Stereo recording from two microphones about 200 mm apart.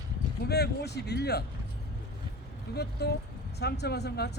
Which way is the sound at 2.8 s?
55° left (ahead or behind).